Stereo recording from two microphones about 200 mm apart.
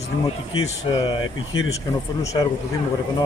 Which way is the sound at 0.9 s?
20° left (ahead or behind).